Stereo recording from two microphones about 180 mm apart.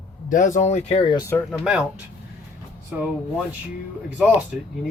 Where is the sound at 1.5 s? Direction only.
Centre (ahead or behind).